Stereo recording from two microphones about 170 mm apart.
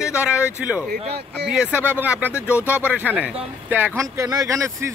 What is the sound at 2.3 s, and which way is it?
Speech, 15° left (ahead or behind).